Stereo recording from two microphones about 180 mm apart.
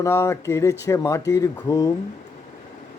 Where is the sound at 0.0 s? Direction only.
15° left (ahead or behind).